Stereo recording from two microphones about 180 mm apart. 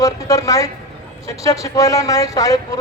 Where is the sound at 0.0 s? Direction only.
20° left (ahead or behind).